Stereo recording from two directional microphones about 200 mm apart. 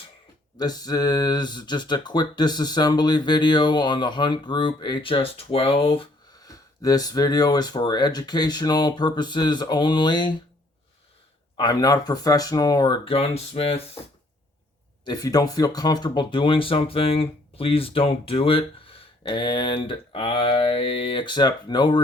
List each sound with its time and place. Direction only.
0.5 s speech: 20° left (ahead or behind)
11.5 s speech: 20° left (ahead or behind)
15.0 s speech: 20° left (ahead or behind)